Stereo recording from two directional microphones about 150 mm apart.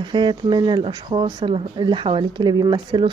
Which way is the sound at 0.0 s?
30° right (ahead or behind).